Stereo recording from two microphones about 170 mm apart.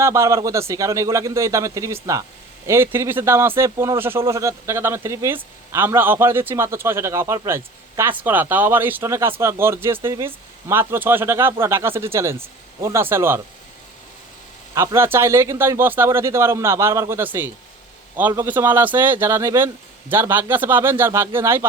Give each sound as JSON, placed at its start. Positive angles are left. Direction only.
{"t": 0.0, "sound": "a man's voice", "side_deg": -15}
{"t": 14.8, "sound": "a man's voice", "side_deg": -15}